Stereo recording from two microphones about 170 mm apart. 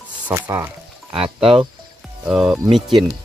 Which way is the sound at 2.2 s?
Centre (ahead or behind).